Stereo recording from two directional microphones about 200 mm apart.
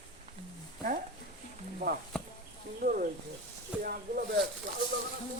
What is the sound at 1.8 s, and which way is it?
Speech, 50° right (ahead or behind).